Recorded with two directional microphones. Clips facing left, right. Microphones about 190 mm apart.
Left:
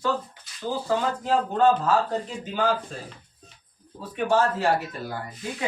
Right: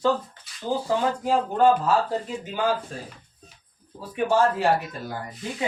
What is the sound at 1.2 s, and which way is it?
A man's voice, 10° right (ahead or behind).